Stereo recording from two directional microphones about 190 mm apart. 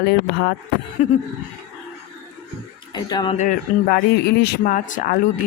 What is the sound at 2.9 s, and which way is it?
Speech, 25° left (ahead or behind).